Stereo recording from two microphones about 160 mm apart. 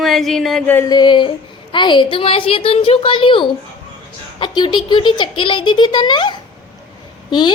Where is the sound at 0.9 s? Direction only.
30° left (ahead or behind).